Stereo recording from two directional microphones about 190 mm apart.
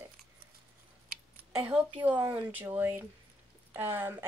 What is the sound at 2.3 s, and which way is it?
A woman's voice, 10° right (ahead or behind).